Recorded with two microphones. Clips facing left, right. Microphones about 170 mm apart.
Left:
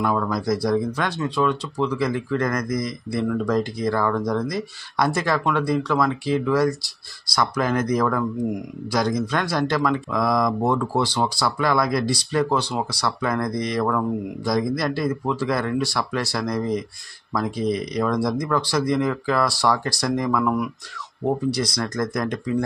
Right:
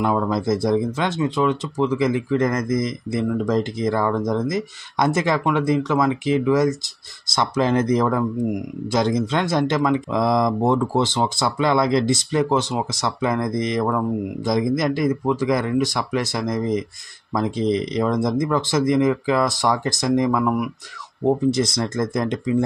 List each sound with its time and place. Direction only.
0.0 s speech: 25° right (ahead or behind)
21.2 s speech: 25° right (ahead or behind)